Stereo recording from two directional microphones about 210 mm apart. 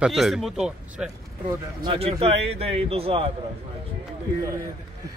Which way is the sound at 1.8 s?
25° right (ahead or behind).